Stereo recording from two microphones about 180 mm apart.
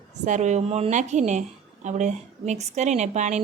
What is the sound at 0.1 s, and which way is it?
A woman's voice, 40° right (ahead or behind).